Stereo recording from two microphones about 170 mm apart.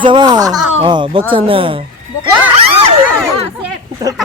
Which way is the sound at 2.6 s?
35° right (ahead or behind).